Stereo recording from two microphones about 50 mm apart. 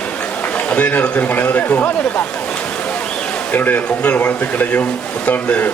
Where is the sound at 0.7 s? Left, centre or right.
Left.